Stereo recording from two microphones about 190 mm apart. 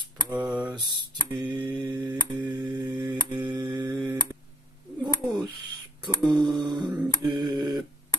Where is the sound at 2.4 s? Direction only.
25° right (ahead or behind).